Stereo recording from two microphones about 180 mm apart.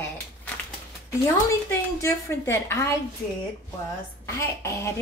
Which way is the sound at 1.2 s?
15° left (ahead or behind).